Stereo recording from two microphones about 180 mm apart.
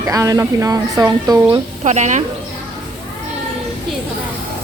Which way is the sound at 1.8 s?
40° right (ahead or behind).